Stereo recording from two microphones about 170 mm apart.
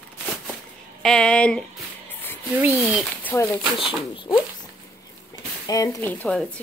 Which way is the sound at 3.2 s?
15° left (ahead or behind).